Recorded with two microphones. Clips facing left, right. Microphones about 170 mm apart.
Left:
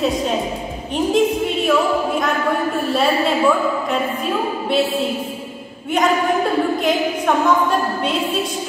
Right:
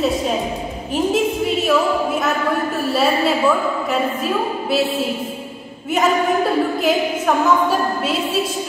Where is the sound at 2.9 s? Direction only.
Centre (ahead or behind).